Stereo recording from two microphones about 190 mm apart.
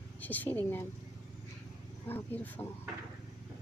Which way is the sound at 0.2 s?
10° left (ahead or behind).